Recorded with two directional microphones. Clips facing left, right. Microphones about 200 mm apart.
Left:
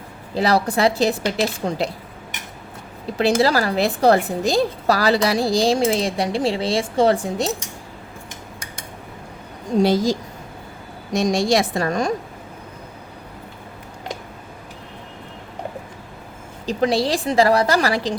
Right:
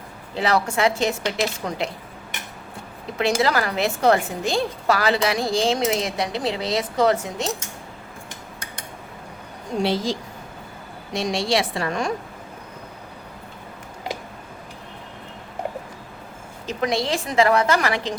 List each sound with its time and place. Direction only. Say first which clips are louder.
0.3 s a woman's voice: left 3 dB; 35° left (ahead or behind)
3.2 s a woman's voice: left 4 dB; 35° left (ahead or behind)
9.8 s a woman's voice: left 4 dB; 45° left (ahead or behind)
16.6 s a woman's voice: left 4 dB; 35° left (ahead or behind)